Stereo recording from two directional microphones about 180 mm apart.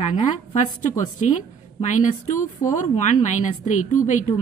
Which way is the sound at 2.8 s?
45° left (ahead or behind).